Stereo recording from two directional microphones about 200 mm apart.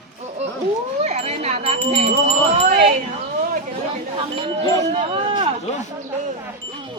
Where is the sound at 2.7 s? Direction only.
50° right (ahead or behind).